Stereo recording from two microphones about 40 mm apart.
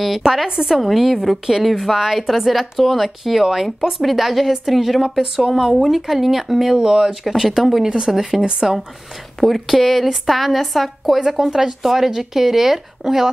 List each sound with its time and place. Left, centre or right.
0.2 s speech: centre
0.7 s speech: centre
8.5 s speech: centre
9.4 s speech: centre
11.1 s speech: centre